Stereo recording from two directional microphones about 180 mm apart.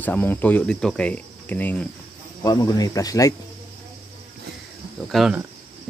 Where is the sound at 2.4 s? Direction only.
20° left (ahead or behind).